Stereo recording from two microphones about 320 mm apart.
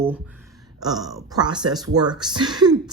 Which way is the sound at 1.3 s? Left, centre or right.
Centre.